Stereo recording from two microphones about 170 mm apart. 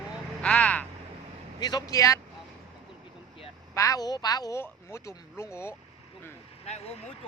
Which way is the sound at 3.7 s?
20° left (ahead or behind).